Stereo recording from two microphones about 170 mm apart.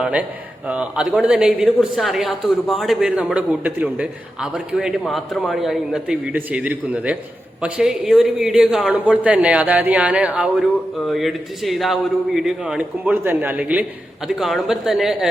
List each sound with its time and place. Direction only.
0.0 s a man's voice: 5° right (ahead or behind)